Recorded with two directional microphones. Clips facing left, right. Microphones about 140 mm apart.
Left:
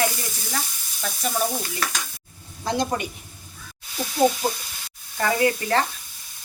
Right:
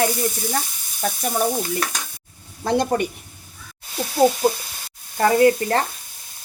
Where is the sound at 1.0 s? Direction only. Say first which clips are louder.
Right 4 dB; 50° right (ahead or behind).